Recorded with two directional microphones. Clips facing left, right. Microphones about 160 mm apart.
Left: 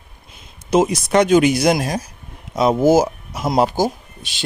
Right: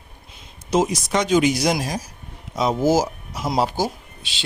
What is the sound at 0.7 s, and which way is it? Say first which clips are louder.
Speech: left 4 dB; 55° left (ahead or behind).